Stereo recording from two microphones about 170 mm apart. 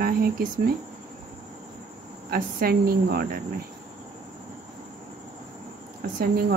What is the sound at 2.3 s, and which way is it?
Speech, 60° right (ahead or behind).